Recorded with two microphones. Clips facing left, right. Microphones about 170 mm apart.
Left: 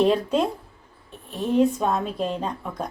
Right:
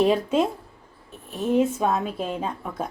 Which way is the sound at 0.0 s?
5° right (ahead or behind).